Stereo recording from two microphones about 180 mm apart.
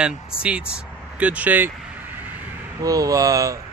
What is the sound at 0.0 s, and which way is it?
Speech, 5° right (ahead or behind).